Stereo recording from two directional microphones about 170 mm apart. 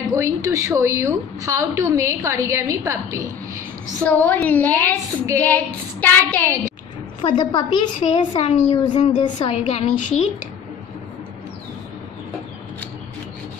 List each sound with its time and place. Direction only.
0.0 s a woman's voice: 15° right (ahead or behind)
4.0 s child singing: 10° left (ahead or behind)
7.2 s a woman's voice: 25° left (ahead or behind)
8.8 s a woman's voice: 25° left (ahead or behind)
9.9 s a woman's voice: 45° left (ahead or behind)